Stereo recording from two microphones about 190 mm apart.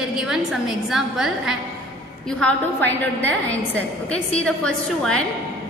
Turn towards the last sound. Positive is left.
turn(degrees=5)  # may be behind; listen again after turning